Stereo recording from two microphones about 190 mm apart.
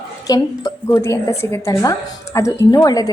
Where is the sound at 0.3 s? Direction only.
15° left (ahead or behind).